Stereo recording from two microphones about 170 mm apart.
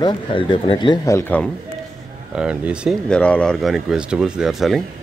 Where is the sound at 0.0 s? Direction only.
30° left (ahead or behind).